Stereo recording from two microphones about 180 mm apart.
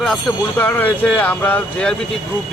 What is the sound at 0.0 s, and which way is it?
Speech, 5° left (ahead or behind).